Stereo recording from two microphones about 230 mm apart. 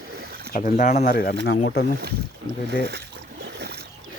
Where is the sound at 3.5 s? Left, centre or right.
Right.